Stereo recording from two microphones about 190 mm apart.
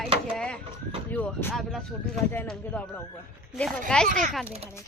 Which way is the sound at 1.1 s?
10° left (ahead or behind).